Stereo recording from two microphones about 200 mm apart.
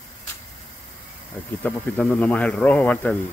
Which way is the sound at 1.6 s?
5° left (ahead or behind).